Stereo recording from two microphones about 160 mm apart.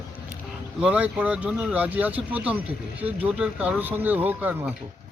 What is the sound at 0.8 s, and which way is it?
Speech, 10° right (ahead or behind).